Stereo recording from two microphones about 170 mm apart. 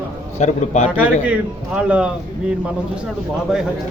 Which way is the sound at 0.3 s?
40° left (ahead or behind).